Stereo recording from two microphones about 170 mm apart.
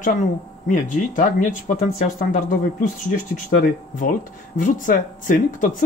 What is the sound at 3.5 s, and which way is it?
Speech, 50° left (ahead or behind).